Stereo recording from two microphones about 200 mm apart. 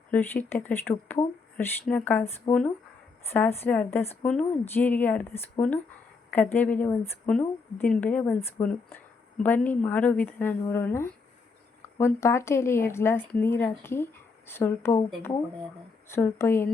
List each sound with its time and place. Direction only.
0.1 s a woman's voice: 10° left (ahead or behind)